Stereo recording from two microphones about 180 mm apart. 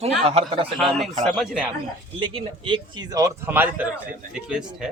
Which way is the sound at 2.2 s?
30° right (ahead or behind).